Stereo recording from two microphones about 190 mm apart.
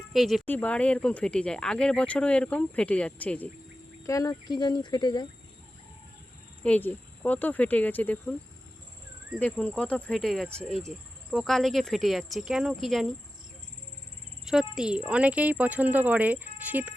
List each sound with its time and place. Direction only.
0.1 s speech: centre (ahead or behind); by 5.3 s 20° left (ahead or behind)
6.6 s speech: 10° left (ahead or behind)
9.4 s speech: 5° left (ahead or behind)
14.4 s speech: 5° right (ahead or behind)